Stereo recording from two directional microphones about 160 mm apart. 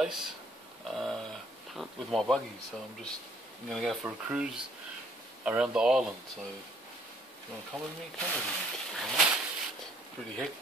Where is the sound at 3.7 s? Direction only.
Centre (ahead or behind).